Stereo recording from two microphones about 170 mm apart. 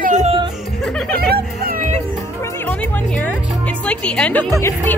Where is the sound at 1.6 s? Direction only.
50° right (ahead or behind).